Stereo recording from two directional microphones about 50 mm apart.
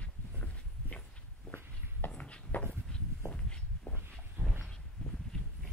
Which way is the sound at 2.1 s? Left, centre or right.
Left.